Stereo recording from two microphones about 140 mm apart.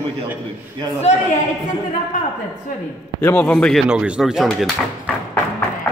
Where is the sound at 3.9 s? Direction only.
5° right (ahead or behind).